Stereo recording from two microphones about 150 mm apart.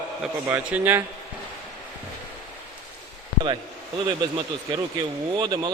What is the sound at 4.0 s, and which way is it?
Speech, 35° right (ahead or behind).